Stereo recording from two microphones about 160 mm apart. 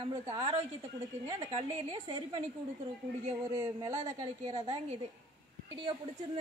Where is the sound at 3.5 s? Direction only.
25° right (ahead or behind).